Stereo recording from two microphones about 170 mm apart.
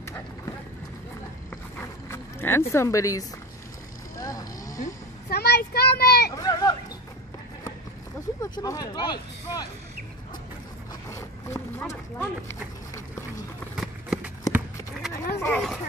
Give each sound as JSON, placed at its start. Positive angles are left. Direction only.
{"t": 1.8, "sound": "a sound", "side_deg": 15}
{"t": 4.2, "sound": "vehicle", "side_deg": 20}
{"t": 5.3, "sound": "child singing", "side_deg": 70}
{"t": 6.3, "sound": "a sound", "side_deg": 20}
{"t": 8.4, "sound": "speech", "side_deg": 20}
{"t": 11.1, "sound": "speech", "side_deg": 15}
{"t": 13.7, "sound": "run", "side_deg": -5}
{"t": 15.3, "sound": "speech", "side_deg": 15}